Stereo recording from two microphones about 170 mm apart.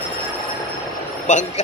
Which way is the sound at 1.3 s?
45° left (ahead or behind).